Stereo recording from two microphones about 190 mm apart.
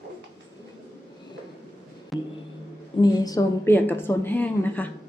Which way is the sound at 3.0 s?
20° left (ahead or behind).